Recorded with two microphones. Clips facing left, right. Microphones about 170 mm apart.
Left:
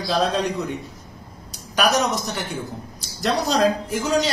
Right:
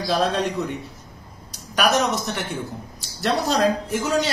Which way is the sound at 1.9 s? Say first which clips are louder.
Right 1 dB; centre (ahead or behind).